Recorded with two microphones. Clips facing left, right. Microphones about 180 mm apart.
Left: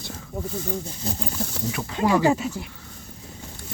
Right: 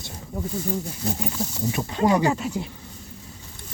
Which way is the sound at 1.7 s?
20° right (ahead or behind).